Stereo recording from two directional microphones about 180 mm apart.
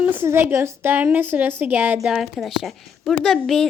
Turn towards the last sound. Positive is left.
turn(degrees=0)  # may be behind; listen again after turning